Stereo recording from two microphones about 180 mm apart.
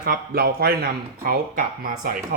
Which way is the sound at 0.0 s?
60° right (ahead or behind).